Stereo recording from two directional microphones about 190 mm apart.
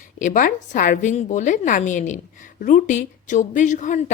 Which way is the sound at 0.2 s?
45° left (ahead or behind).